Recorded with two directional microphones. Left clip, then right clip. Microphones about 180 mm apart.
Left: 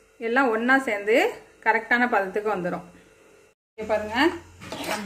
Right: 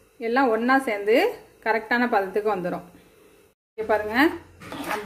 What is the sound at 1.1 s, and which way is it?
A woman's voice, 30° right (ahead or behind).